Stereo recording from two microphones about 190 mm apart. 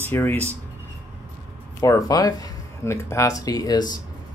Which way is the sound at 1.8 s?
20° left (ahead or behind).